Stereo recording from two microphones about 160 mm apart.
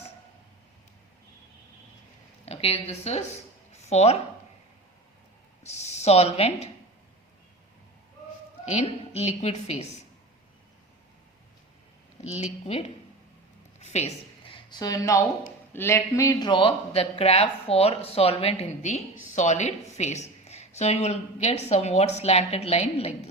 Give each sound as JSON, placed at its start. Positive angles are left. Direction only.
{"t": 2.4, "sound": "speech", "side_deg": 40}
{"t": 5.6, "sound": "speech", "side_deg": 45}
{"t": 8.6, "sound": "a woman's voice", "side_deg": 45}
{"t": 12.2, "sound": "a woman's voice", "side_deg": 40}